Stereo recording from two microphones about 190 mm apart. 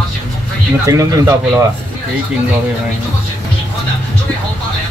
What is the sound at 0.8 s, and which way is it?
Speech, 15° right (ahead or behind).